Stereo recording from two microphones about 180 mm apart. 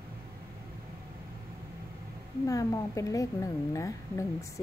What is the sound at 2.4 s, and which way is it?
Speech, 20° left (ahead or behind).